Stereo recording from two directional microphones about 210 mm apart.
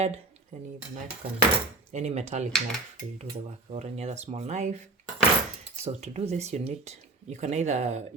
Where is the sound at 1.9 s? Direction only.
30° right (ahead or behind).